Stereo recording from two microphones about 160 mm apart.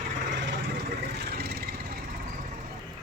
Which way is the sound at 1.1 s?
85° right.